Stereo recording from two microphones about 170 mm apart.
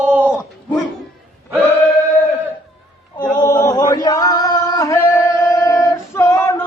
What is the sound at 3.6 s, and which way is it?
Male singing, 20° left (ahead or behind).